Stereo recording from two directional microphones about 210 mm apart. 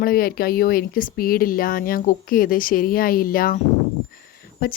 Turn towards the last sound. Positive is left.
turn(degrees=45)  # may be behind; listen again after turning